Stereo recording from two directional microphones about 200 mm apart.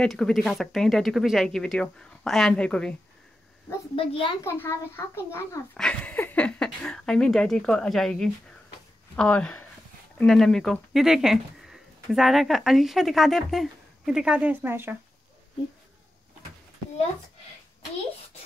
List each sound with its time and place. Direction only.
0.0 s speech: centre (ahead or behind)
3.9 s a child's voice: 25° left (ahead or behind)
4.4 s speech: 10° left (ahead or behind); by 15.0 s 10° right (ahead or behind)